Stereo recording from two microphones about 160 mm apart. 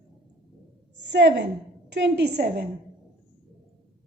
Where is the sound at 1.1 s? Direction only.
90° right.